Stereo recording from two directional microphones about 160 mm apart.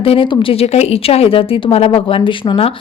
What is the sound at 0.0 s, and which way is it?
Speech, 35° left (ahead or behind).